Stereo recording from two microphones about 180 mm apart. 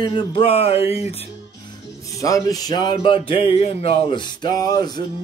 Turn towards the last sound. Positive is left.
turn(degrees=20)  # may be behind; listen again after turning